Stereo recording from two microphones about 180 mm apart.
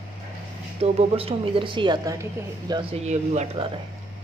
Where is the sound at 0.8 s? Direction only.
35° right (ahead or behind).